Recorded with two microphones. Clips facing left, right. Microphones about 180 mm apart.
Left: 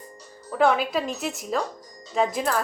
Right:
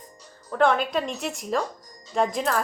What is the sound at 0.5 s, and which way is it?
A woman's voice, 5° left (ahead or behind).